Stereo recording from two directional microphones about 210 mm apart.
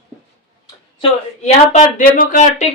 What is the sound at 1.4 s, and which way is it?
Speech, 35° left (ahead or behind).